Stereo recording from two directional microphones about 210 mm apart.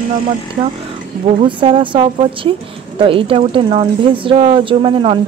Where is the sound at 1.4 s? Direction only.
25° right (ahead or behind).